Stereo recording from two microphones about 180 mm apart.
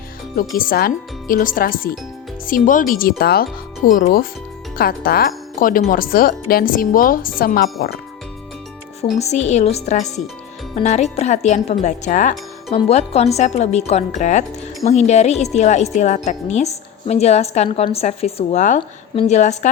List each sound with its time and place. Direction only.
0.3 s a woman's voice: 50° left (ahead or behind)
9.0 s speech: 35° left (ahead or behind)